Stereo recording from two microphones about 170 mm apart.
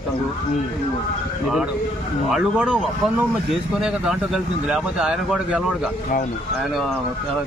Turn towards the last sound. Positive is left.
turn(degrees=-5)  # may be behind; listen again after turning